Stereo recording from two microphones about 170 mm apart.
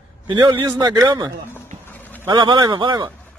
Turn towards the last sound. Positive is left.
turn(degrees=-25)  # may be behind; listen again after turning